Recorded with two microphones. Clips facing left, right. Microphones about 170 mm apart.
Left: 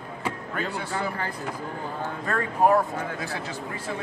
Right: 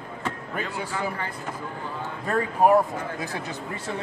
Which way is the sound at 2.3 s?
15° right (ahead or behind).